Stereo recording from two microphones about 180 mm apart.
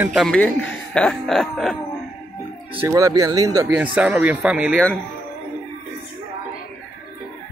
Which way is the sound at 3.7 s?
10° right (ahead or behind).